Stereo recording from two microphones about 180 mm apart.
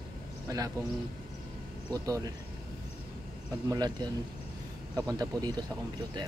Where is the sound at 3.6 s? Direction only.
20° right (ahead or behind).